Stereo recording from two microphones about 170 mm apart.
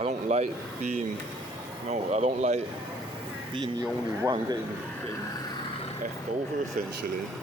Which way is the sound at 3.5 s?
25° right (ahead or behind).